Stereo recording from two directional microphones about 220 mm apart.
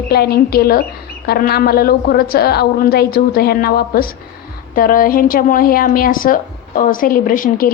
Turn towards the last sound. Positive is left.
turn(degrees=40)  # may be behind; listen again after turning